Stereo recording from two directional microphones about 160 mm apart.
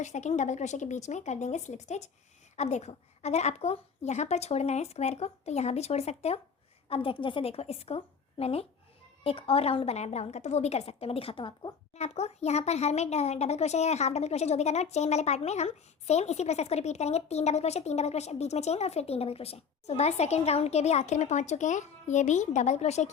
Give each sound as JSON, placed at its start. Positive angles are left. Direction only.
{"t": 0.0, "sound": "a child's voice", "side_deg": 45}
{"t": 11.9, "sound": "a child's voice", "side_deg": 45}